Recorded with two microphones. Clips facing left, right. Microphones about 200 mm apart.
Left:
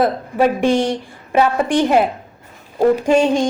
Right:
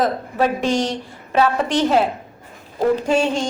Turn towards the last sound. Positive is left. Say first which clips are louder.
# left 4 dB
turn(degrees=15)  # may be behind; listen again after turning